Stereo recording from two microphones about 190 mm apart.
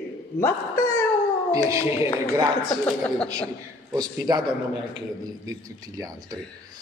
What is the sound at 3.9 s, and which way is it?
Speech, 20° right (ahead or behind).